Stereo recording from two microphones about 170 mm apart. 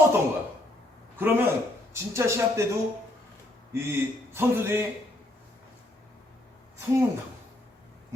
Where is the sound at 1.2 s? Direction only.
15° right (ahead or behind).